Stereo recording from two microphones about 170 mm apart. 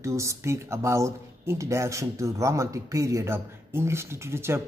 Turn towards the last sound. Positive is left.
turn(degrees=-15)  # may be behind; listen again after turning